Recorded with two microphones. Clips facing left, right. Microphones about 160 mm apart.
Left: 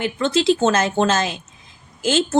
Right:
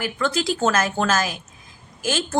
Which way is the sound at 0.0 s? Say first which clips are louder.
Left 5 dB; 25° left (ahead or behind).